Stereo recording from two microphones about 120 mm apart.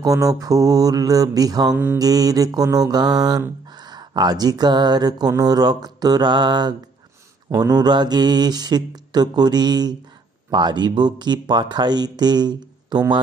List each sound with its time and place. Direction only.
0.0 s mantra: 30° right (ahead or behind)